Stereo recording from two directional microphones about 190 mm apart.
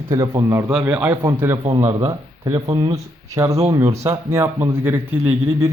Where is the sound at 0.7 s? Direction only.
5° right (ahead or behind).